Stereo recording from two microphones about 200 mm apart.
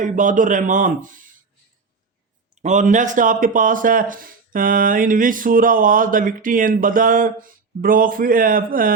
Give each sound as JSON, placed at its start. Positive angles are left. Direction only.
{"t": 0.0, "sound": "a man's voice", "side_deg": -40}
{"t": 2.6, "sound": "speech", "side_deg": -40}